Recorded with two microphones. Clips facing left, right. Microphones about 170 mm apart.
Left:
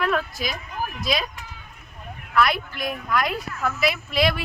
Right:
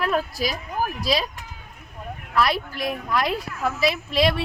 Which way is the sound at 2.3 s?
30° right (ahead or behind).